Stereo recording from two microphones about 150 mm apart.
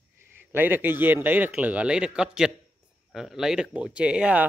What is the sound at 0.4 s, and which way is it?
A man's voice, 15° right (ahead or behind).